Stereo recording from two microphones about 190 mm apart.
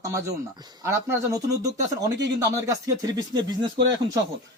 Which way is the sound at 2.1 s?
70° right (ahead or behind).